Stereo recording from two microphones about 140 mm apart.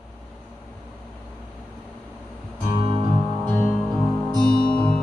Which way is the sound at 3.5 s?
10° left (ahead or behind).